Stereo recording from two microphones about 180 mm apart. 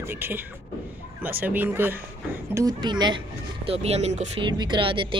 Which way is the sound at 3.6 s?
35° right (ahead or behind).